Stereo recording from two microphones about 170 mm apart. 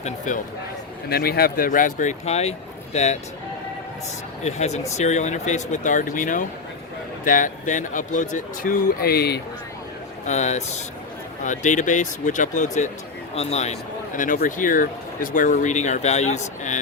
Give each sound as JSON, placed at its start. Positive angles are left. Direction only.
{"t": 0.3, "sound": "speech", "side_deg": 50}
{"t": 1.1, "sound": "speech", "side_deg": 65}
{"t": 4.4, "sound": "a man's voice", "side_deg": 40}
{"t": 10.2, "sound": "a man's voice", "side_deg": 40}
{"t": 14.2, "sound": "speech", "side_deg": 50}